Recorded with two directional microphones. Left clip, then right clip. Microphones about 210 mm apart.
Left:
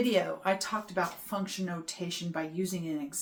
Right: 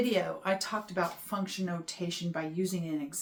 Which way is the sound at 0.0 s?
Centre (ahead or behind).